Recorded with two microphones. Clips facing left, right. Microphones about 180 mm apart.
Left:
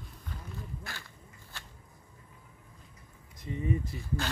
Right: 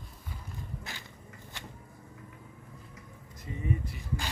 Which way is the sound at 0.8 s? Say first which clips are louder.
Right 1 dB; 20° right (ahead or behind).